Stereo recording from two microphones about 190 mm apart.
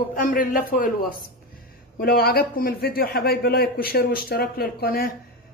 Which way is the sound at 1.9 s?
55° left (ahead or behind).